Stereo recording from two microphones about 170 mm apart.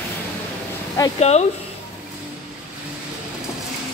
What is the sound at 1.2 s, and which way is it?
Speech, 40° left (ahead or behind).